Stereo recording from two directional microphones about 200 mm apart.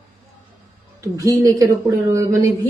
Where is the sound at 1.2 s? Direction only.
15° right (ahead or behind).